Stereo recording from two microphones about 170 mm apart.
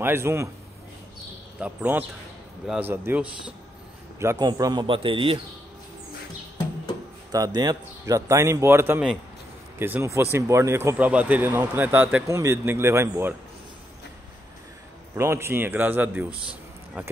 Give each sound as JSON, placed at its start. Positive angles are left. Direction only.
{"t": 0.0, "sound": "a man's voice", "side_deg": -15}
{"t": 1.6, "sound": "a man's voice", "side_deg": -10}
{"t": 4.2, "sound": "a man's voice", "side_deg": -20}
{"t": 7.3, "sound": "a man's voice", "side_deg": -25}
{"t": 15.1, "sound": "a man's voice", "side_deg": -15}
{"t": 16.4, "sound": "a sound", "side_deg": -10}